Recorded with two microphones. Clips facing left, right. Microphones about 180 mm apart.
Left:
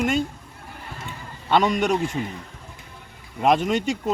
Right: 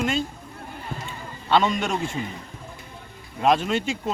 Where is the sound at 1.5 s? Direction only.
10° left (ahead or behind).